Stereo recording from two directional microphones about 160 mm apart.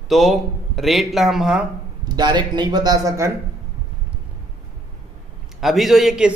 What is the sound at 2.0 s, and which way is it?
A man's voice, 25° right (ahead or behind).